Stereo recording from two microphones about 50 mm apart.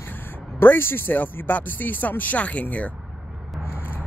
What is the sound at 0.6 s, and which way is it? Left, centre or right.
Speech, left.